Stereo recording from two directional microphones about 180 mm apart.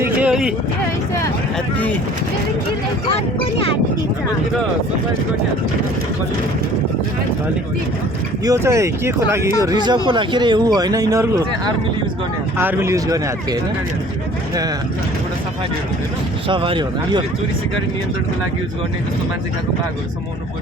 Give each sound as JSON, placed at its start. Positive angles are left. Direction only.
{"t": 0.0, "sound": "a sound", "side_deg": -5}
{"t": 3.1, "sound": "speech", "side_deg": 30}
{"t": 8.4, "sound": "speech", "side_deg": -15}
{"t": 16.5, "sound": "speech", "side_deg": -30}